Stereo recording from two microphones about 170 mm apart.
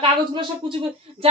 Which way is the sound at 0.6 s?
30° right (ahead or behind).